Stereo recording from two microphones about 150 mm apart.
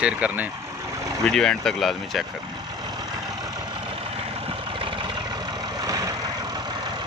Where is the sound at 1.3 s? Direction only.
5° left (ahead or behind).